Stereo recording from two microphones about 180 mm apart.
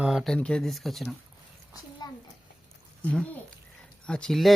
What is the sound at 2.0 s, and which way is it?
Speech, 20° left (ahead or behind).